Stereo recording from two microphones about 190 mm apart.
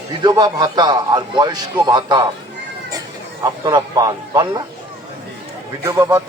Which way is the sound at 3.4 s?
20° right (ahead or behind).